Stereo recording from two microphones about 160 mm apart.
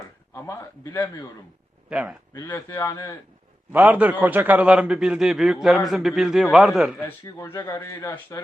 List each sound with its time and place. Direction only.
0.3 s a man's voice: 20° left (ahead or behind)
1.9 s a man's voice: 5° right (ahead or behind)
2.3 s a man's voice: 20° left (ahead or behind)
3.7 s a man's voice: 10° right (ahead or behind)
7.3 s a man's voice: 15° left (ahead or behind)